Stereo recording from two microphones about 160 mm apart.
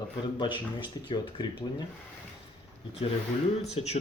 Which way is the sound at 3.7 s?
40° left (ahead or behind).